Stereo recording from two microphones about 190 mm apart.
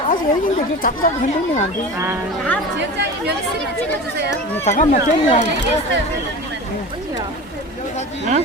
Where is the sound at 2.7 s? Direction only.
65° right (ahead or behind).